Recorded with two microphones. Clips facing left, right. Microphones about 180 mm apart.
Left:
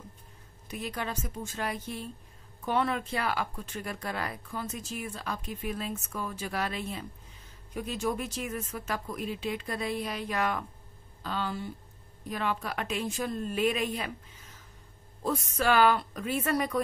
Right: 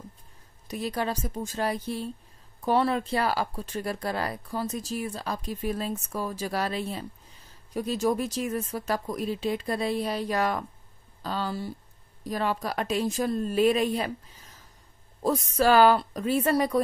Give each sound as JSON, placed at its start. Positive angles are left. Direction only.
{"t": 0.7, "sound": "speech", "side_deg": -35}
{"t": 15.2, "sound": "speech", "side_deg": -35}